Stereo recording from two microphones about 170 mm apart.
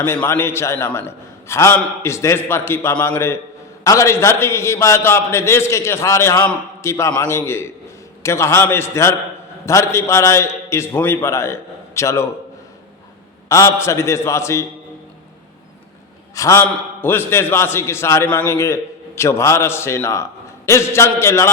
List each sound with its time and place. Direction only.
0.0 s a man's voice: 10° left (ahead or behind)
13.5 s a man's voice: 15° left (ahead or behind)
16.3 s a man's voice: 20° left (ahead or behind)